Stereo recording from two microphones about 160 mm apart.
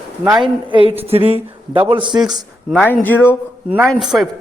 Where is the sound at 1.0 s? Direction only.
40° right (ahead or behind).